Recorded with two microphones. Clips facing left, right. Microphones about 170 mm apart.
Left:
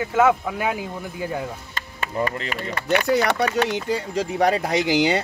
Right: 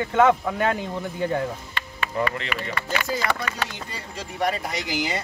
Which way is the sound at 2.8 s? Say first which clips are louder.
Left 8 dB; 70° left (ahead or behind).